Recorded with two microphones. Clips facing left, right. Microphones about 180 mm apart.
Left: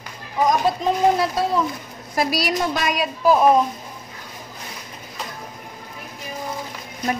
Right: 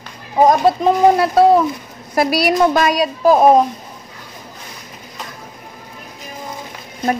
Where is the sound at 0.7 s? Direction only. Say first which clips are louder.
Right 6 dB; 70° right (ahead or behind); by 3.0 s 45° right (ahead or behind).